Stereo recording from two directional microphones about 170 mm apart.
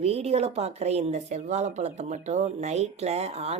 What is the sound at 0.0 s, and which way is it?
Speech, 40° right (ahead or behind).